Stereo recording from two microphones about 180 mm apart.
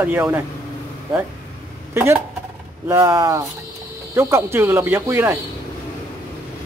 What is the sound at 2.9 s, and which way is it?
Speech, 15° right (ahead or behind).